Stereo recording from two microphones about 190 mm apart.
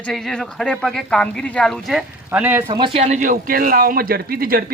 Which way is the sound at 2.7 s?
30° right (ahead or behind).